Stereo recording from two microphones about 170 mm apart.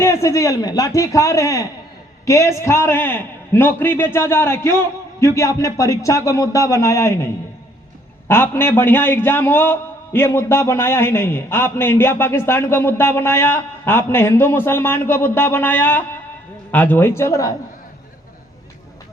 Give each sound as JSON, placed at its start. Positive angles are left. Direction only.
{"t": 0.0, "sound": "a man's voice", "side_deg": 15}
{"t": 8.3, "sound": "a man's voice", "side_deg": 15}